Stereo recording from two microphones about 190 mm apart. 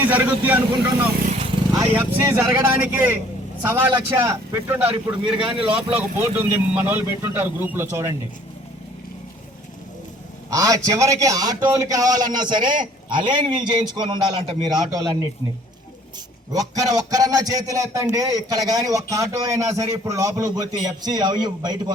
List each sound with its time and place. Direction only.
0.0 s speech: 10° right (ahead or behind)
1.9 s speech: 10° right (ahead or behind)
4.9 s speech: 25° right (ahead or behind)
5.6 s speech: 5° right (ahead or behind)
10.5 s speech: 20° right (ahead or behind)
16.5 s speech: 20° right (ahead or behind)